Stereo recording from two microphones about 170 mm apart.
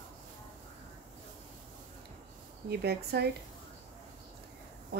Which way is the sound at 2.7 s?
70° right (ahead or behind).